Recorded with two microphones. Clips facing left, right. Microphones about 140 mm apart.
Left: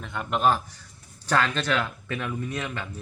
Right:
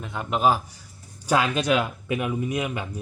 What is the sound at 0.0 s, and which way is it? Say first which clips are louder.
A man's voice: right 1 dB; centre (ahead or behind).